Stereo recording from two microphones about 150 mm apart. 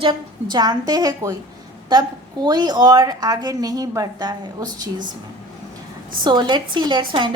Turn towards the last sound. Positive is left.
turn(degrees=-30)  # may be behind; listen again after turning